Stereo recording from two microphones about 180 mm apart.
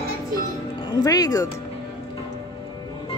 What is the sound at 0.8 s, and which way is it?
Speech, 20° left (ahead or behind).